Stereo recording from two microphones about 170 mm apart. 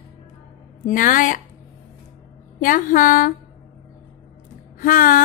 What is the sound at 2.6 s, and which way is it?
Speech, 50° left (ahead or behind).